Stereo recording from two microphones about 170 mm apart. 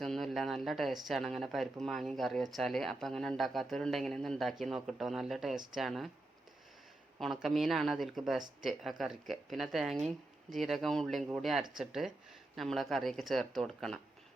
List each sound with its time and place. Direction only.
0.0 s speech: centre (ahead or behind)
7.2 s speech: centre (ahead or behind)